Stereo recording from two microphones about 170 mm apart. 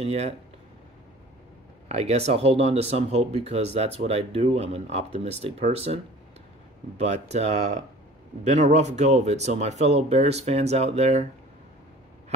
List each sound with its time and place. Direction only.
0.0 s speech: 35° right (ahead or behind)
1.9 s speech: 40° right (ahead or behind)
7.0 s speech: 40° right (ahead or behind)